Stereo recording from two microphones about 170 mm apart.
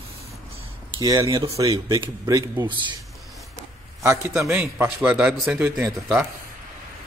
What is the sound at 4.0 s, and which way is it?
A man's voice, 15° right (ahead or behind).